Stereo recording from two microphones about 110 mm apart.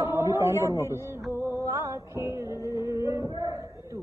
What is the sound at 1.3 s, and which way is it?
Music, 25° right (ahead or behind).